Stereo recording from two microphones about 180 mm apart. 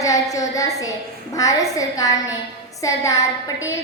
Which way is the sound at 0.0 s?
20° left (ahead or behind).